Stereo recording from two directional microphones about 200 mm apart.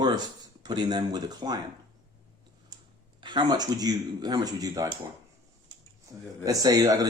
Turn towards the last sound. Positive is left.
turn(degrees=-20)  # may be behind; listen again after turning